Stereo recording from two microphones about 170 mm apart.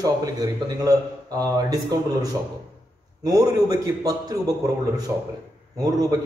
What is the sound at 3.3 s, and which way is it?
A man's voice, 20° right (ahead or behind).